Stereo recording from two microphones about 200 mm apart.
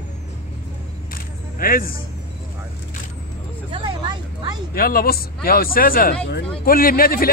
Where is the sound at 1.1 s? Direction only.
45° left (ahead or behind).